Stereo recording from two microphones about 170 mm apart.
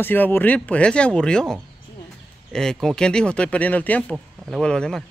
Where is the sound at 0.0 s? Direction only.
10° left (ahead or behind).